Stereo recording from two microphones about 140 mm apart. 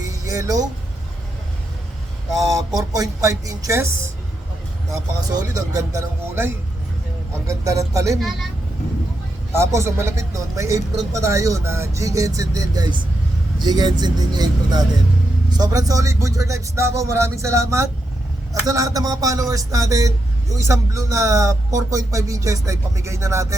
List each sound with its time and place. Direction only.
0.3 s speech: 25° right (ahead or behind)
2.7 s speech: 25° right (ahead or behind)
9.6 s speech: 20° right (ahead or behind)